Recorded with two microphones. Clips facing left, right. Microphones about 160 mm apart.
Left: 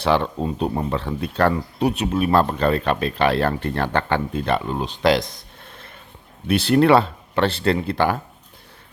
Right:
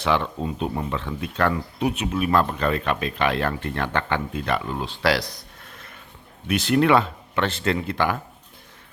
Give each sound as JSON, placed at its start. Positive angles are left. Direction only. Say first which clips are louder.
{"t": 0.0, "sound": "speech", "louder": "left 3 dB", "side_deg": 35}